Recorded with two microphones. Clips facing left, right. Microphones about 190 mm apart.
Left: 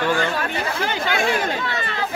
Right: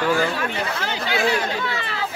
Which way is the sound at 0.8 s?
50° left (ahead or behind).